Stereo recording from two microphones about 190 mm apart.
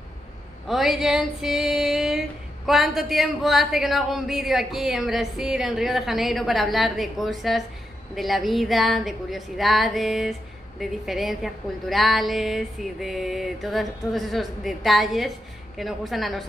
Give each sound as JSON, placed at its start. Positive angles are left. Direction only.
{"t": 0.7, "sound": "female singing", "side_deg": 0}